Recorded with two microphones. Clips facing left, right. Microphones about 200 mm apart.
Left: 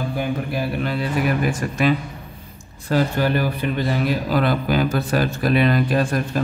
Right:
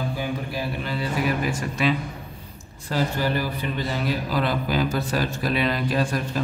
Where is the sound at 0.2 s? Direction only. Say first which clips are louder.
Left 4 dB; 60° left (ahead or behind).